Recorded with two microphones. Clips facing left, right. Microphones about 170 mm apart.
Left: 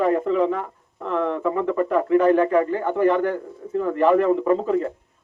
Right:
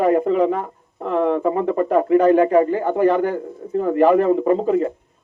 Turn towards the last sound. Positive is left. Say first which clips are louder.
# right 3 dB
turn(degrees=-30)  # may be behind; listen again after turning